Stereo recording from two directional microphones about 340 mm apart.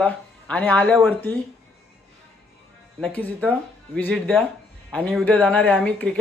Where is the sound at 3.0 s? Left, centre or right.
Centre.